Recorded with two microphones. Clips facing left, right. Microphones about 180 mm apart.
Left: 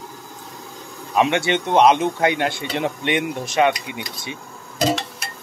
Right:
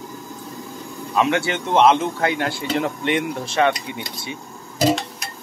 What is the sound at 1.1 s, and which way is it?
Speech, 20° left (ahead or behind).